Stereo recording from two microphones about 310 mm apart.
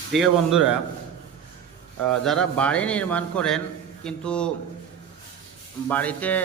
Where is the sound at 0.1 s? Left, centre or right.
Centre.